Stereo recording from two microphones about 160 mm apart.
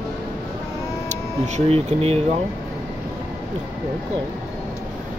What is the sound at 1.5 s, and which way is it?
Speech, 40° right (ahead or behind).